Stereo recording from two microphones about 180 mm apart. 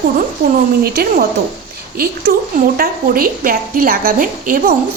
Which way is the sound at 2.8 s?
55° right (ahead or behind).